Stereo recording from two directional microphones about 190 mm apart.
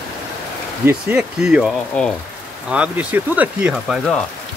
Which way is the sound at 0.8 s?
5° right (ahead or behind).